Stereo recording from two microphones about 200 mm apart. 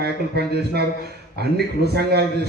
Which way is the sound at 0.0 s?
55° right (ahead or behind).